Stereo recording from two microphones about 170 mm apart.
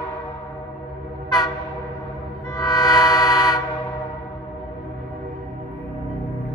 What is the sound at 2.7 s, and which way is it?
Vehicle, 20° left (ahead or behind).